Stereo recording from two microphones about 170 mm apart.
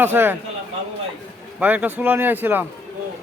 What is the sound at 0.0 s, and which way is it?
Speech, 10° right (ahead or behind).